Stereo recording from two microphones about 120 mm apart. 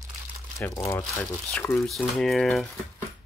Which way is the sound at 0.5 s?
25° left (ahead or behind).